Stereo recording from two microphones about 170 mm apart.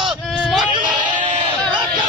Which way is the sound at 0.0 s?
Centre (ahead or behind).